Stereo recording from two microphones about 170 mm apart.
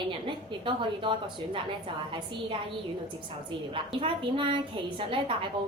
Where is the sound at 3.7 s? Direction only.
30° right (ahead or behind).